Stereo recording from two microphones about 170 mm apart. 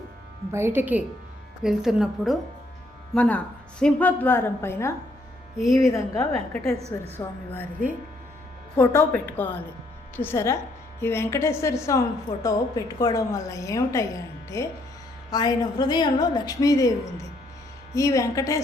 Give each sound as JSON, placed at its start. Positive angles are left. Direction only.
{"t": 0.5, "sound": "a woman's voice", "side_deg": -15}
{"t": 8.8, "sound": "a woman's voice", "side_deg": 15}